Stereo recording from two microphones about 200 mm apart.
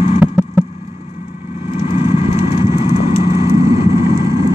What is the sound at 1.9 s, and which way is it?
Vehicle, 30° left (ahead or behind).